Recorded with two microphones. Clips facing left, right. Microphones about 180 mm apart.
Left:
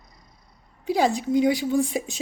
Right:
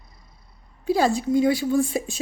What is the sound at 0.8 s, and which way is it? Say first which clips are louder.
A woman's voice: right 1 dB; 15° left (ahead or behind).